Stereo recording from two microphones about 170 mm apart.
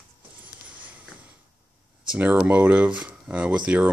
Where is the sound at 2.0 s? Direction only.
10° right (ahead or behind).